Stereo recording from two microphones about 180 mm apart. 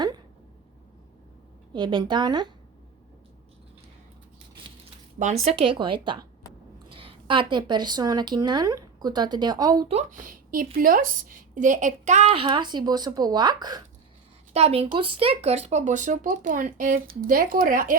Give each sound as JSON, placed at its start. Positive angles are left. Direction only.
{"t": 1.7, "sound": "speech", "side_deg": -25}
{"t": 5.5, "sound": "speech", "side_deg": -30}
{"t": 9.9, "sound": "a woman's voice", "side_deg": -40}
{"t": 14.5, "sound": "speech", "side_deg": -35}